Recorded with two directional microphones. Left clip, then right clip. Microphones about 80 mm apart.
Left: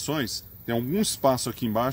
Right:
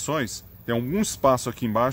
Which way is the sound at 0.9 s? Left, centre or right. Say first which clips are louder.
Right 3 dB; right.